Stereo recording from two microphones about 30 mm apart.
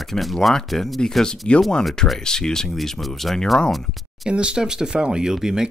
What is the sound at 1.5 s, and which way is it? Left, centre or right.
Speech, left.